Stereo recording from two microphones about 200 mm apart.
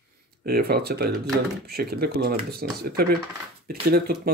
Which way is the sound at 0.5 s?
50° right (ahead or behind).